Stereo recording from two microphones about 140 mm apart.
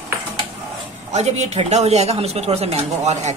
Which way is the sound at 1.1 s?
55° right (ahead or behind).